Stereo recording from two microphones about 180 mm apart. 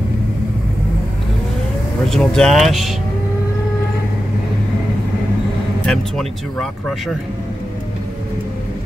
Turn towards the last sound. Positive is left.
turn(degrees=0)  # may be behind; listen again after turning